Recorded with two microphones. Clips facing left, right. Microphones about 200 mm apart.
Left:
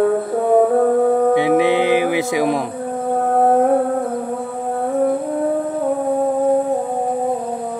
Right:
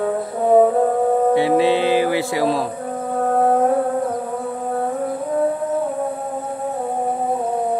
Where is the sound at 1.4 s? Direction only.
15° left (ahead or behind).